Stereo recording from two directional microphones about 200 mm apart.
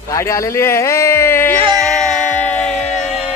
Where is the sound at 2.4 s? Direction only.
5° left (ahead or behind).